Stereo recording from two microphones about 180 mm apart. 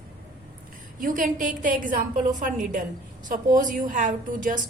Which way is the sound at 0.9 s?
50° right (ahead or behind).